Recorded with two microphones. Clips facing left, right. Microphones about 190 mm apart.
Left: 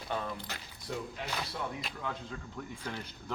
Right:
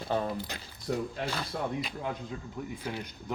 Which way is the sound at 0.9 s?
45° right (ahead or behind).